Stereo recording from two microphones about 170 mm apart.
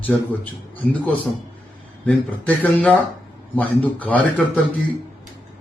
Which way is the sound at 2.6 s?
10° left (ahead or behind).